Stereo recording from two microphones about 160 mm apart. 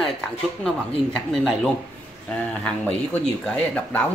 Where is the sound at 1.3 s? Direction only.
5° left (ahead or behind).